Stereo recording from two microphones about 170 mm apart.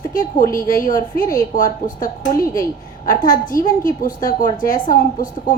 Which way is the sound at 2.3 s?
20° left (ahead or behind).